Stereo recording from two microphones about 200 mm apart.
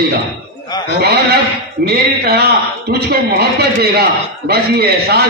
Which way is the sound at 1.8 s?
50° right (ahead or behind).